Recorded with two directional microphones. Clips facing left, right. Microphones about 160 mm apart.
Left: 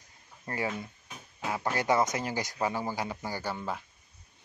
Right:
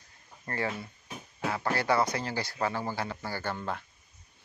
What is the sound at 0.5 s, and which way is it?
Speech, 15° left (ahead or behind).